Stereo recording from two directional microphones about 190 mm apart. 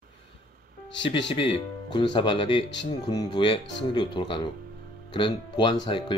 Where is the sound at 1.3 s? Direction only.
25° left (ahead or behind).